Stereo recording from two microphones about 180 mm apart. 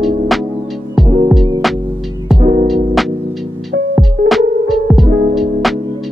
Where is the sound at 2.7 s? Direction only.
Centre (ahead or behind).